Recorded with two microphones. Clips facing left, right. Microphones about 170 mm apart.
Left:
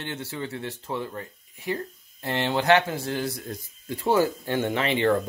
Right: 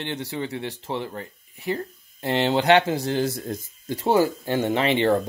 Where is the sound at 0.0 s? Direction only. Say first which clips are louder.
Right 4 dB; 20° right (ahead or behind).